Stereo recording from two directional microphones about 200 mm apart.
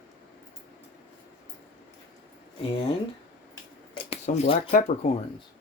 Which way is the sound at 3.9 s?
30° left (ahead or behind).